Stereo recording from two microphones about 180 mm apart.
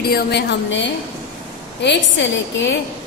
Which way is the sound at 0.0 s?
65° left (ahead or behind).